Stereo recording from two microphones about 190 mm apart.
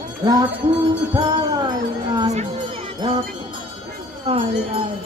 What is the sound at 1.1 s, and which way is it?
Music, 25° right (ahead or behind).